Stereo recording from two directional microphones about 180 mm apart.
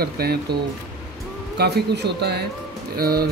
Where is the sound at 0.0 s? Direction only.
60° right (ahead or behind).